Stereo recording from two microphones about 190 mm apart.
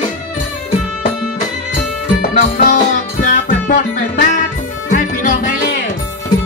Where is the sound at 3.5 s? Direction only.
40° left (ahead or behind).